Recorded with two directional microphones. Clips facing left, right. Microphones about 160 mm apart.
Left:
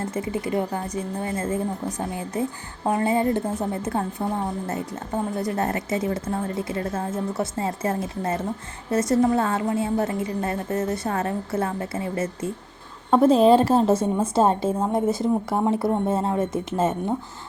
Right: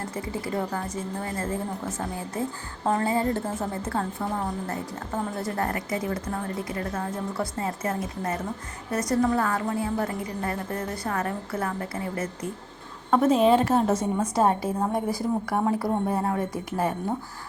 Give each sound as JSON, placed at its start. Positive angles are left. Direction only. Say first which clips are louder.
{"t": 0.1, "sound": "a woman's voice", "louder": "left 5 dB", "side_deg": 20}